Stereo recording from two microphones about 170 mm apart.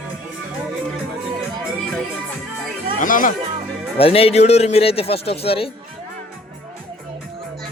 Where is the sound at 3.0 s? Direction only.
50° left (ahead or behind).